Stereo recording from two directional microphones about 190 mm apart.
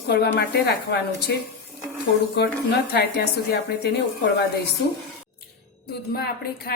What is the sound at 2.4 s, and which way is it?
Speech, 60° left (ahead or behind).